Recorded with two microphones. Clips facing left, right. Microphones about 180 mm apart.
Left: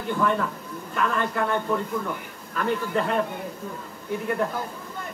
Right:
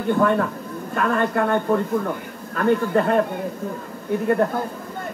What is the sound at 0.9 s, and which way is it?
Speech, 50° right (ahead or behind).